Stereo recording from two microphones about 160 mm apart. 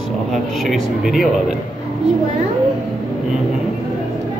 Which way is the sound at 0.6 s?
Centre (ahead or behind).